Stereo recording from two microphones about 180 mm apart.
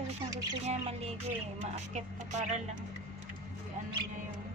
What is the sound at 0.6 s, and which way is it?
Speech, 35° right (ahead or behind).